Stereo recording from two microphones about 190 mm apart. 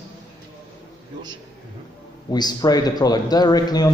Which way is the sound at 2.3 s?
20° left (ahead or behind).